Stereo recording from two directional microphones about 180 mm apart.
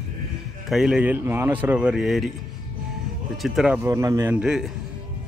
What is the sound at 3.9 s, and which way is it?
Speech, 20° right (ahead or behind).